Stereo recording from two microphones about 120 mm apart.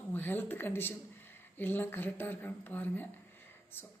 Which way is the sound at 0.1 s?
15° left (ahead or behind).